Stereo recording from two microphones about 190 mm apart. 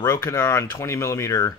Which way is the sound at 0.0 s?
15° left (ahead or behind).